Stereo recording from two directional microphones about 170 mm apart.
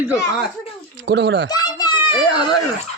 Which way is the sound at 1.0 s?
90° right.